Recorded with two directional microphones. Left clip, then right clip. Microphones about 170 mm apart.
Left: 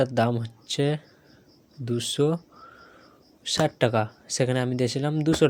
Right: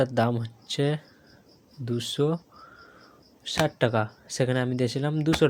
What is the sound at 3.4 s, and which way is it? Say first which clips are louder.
Speech: left 2 dB; 5° left (ahead or behind).